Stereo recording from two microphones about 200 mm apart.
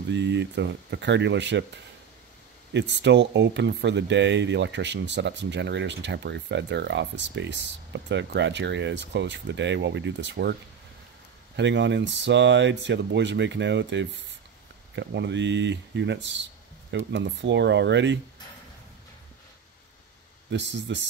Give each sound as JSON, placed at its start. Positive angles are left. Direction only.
{"t": 0.1, "sound": "speech", "side_deg": -60}
{"t": 2.7, "sound": "speech", "side_deg": -60}
{"t": 11.5, "sound": "speech", "side_deg": -60}
{"t": 20.4, "sound": "speech", "side_deg": -65}